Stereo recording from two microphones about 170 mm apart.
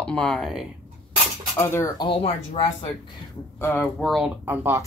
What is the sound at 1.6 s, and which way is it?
Speech, 15° left (ahead or behind).